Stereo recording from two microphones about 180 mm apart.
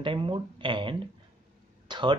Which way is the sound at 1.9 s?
25° right (ahead or behind).